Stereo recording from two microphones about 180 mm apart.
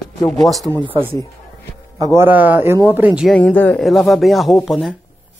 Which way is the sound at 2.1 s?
10° right (ahead or behind).